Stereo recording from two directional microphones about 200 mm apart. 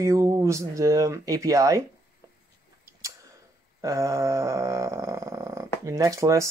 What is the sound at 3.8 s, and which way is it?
Speech, 15° right (ahead or behind).